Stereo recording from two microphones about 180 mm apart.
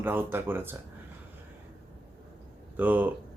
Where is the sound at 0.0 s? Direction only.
10° right (ahead or behind).